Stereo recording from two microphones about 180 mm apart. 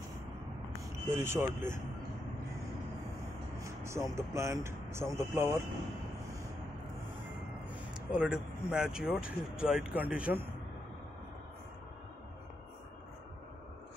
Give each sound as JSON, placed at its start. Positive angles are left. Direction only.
{"t": 1.0, "sound": "speech", "side_deg": -15}
{"t": 3.5, "sound": "speech", "side_deg": -15}
{"t": 7.9, "sound": "speech", "side_deg": -5}